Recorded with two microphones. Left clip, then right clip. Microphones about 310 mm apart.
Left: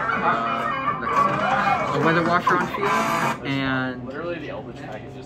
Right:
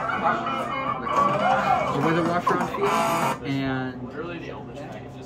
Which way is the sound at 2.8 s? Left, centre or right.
Right.